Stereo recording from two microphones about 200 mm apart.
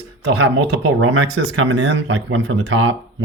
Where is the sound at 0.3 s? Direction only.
65° right (ahead or behind).